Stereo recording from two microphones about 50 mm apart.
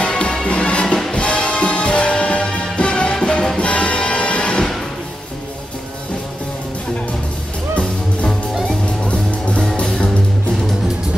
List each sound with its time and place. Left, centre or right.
0.0 s music: centre
8.6 s music: left